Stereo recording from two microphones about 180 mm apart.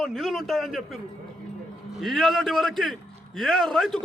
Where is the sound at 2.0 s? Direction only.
Centre (ahead or behind).